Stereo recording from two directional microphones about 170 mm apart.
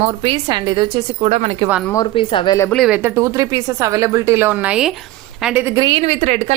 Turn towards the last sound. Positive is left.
turn(degrees=-45)  # may be behind; listen again after turning